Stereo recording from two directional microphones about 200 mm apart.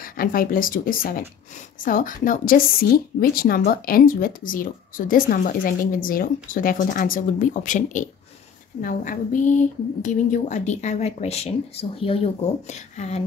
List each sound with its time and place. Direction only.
0.2 s a woman's voice: 45° left (ahead or behind)